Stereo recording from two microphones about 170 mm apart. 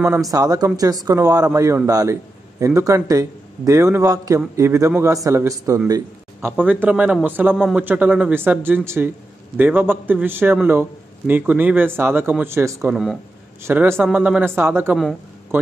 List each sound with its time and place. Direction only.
0.3 s a man's voice: 20° right (ahead or behind)
6.5 s a man's voice: 10° right (ahead or behind)
12.9 s a man's voice: centre (ahead or behind)
13.7 s a man's voice: 15° right (ahead or behind)